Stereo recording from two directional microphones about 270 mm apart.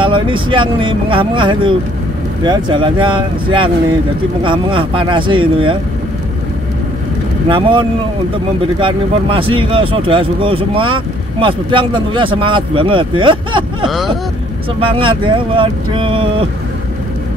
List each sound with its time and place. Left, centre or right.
0.0 s speech: centre
7.4 s speech: centre
13.8 s speech: centre
15.0 s speech: centre